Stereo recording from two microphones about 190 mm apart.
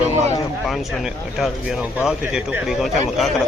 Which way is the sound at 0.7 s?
5° right (ahead or behind).